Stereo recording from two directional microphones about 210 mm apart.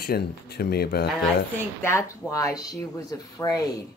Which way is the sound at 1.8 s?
15° left (ahead or behind).